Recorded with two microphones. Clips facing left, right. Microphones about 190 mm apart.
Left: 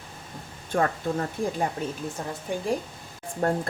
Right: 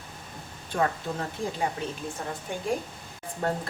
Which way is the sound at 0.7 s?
50° left (ahead or behind).